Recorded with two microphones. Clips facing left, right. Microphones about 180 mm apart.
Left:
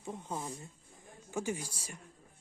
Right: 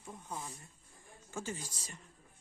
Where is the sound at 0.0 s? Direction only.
25° left (ahead or behind).